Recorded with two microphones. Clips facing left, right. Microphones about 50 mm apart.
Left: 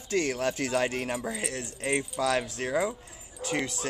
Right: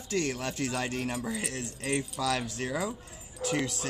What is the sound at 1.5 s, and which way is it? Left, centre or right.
Speech, left.